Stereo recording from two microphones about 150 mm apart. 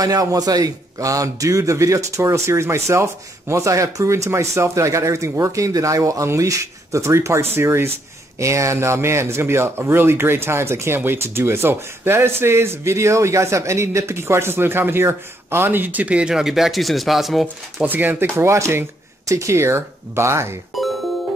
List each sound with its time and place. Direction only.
0.0 s a man's voice: 25° right (ahead or behind); by 17.8 s centre (ahead or behind)
17.8 s speech: 10° right (ahead or behind)
20.7 s music: centre (ahead or behind)